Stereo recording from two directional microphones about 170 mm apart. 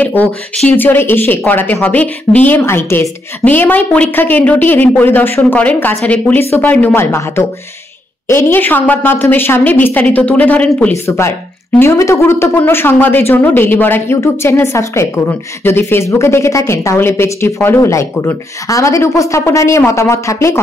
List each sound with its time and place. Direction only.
0.0 s speech: 10° left (ahead or behind)